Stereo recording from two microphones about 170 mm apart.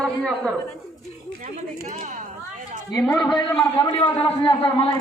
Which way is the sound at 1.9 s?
45° right (ahead or behind).